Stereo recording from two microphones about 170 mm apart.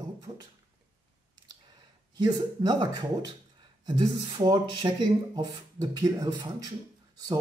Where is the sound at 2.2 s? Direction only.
25° right (ahead or behind).